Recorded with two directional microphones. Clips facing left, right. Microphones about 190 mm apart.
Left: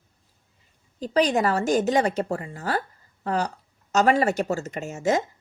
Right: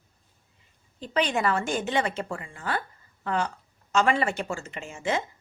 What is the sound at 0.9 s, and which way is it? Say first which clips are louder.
Speech: left 5 dB; 40° left (ahead or behind).